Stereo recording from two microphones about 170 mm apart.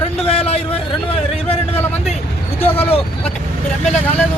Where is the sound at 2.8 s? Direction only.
35° left (ahead or behind).